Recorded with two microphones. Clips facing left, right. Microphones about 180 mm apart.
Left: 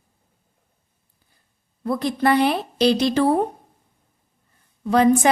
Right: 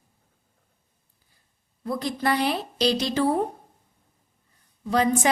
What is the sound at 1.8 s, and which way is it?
A woman's voice, 60° left (ahead or behind).